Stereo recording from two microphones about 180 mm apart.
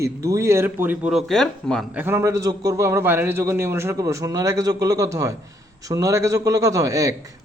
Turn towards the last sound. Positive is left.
turn(degrees=-20)  # may be behind; listen again after turning